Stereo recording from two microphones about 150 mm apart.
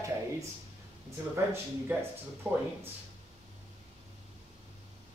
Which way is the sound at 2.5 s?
10° right (ahead or behind).